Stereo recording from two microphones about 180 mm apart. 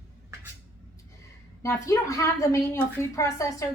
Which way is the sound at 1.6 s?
15° left (ahead or behind).